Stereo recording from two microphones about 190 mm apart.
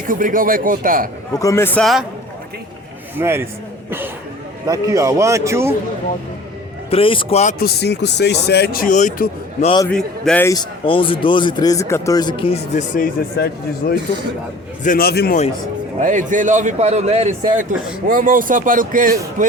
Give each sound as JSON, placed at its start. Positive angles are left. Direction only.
{"t": 0.1, "sound": "a man's voice", "side_deg": -45}
{"t": 1.4, "sound": "a man's voice", "side_deg": 15}
{"t": 3.2, "sound": "a man's voice", "side_deg": -10}
{"t": 6.9, "sound": "a man's voice", "side_deg": 25}
{"t": 7.6, "sound": "speech", "side_deg": 60}
{"t": 9.9, "sound": "a man's voice", "side_deg": 5}
{"t": 10.5, "sound": "speech", "side_deg": 25}
{"t": 13.8, "sound": "a man's voice", "side_deg": 50}
{"t": 16.0, "sound": "a man's voice", "side_deg": -40}